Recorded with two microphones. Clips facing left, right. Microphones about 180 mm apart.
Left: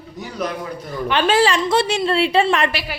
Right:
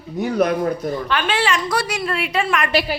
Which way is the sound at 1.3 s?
35° left (ahead or behind).